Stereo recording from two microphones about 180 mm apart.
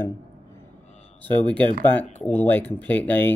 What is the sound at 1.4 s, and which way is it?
Speech, 5° left (ahead or behind).